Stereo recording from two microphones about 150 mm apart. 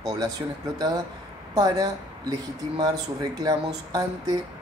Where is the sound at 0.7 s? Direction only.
25° right (ahead or behind).